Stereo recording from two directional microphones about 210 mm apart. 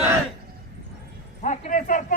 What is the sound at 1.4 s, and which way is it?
Speech, 35° left (ahead or behind).